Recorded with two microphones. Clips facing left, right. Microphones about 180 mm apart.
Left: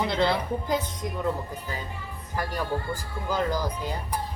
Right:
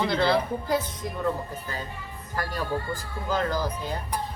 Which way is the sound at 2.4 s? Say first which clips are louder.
Even; 15° left (ahead or behind).